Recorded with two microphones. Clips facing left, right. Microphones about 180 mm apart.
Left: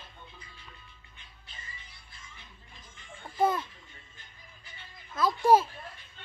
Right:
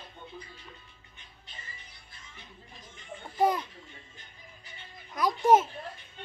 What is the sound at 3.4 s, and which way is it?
Baby laughter, 15° right (ahead or behind).